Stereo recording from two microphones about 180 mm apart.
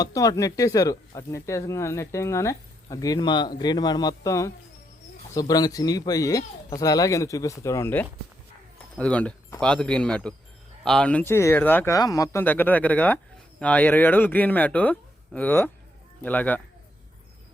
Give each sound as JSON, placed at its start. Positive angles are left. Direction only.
{"t": 0.0, "sound": "speech", "side_deg": 20}